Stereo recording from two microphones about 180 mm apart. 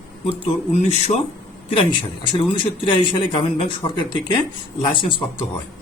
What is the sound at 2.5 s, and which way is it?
A man's voice, 30° left (ahead or behind).